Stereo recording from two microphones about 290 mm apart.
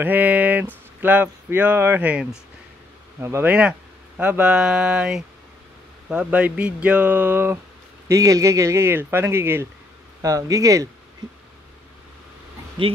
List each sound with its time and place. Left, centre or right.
0.0 s speech: centre